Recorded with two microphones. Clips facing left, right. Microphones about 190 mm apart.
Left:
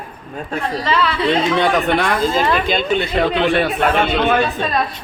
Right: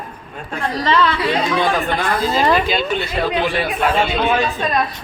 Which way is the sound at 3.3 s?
70° left (ahead or behind).